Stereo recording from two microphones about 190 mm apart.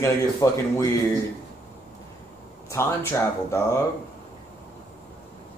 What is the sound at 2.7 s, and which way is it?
Speech, 15° left (ahead or behind).